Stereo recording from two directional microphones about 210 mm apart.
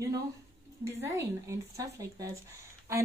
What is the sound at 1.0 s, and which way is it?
Speech, 15° right (ahead or behind).